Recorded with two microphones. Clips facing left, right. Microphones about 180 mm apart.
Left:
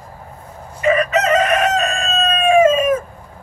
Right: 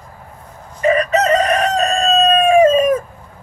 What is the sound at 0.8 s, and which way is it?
Chicken, 35° right (ahead or behind).